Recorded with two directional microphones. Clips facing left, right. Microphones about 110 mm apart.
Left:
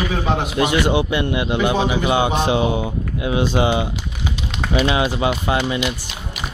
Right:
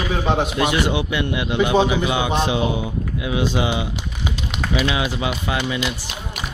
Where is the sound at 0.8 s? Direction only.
40° left (ahead or behind).